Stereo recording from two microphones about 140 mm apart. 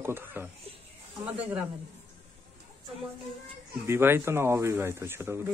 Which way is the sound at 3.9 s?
15° right (ahead or behind).